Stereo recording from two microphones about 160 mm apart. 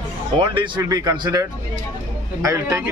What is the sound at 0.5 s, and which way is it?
A man's voice, 25° right (ahead or behind).